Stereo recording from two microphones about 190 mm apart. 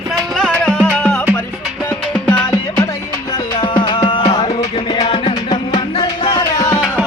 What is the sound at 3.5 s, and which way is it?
Music, 25° left (ahead or behind).